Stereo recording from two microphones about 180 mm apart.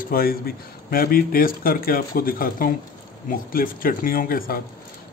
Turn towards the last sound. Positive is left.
turn(degrees=55)  # may be behind; listen again after turning